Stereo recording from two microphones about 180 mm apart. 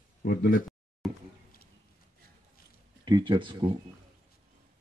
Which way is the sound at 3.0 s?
25° right (ahead or behind).